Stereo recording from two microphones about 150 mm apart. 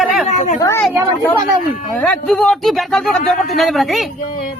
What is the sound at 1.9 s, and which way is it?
Speech, 5° left (ahead or behind).